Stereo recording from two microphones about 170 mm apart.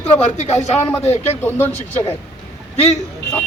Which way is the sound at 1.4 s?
10° left (ahead or behind).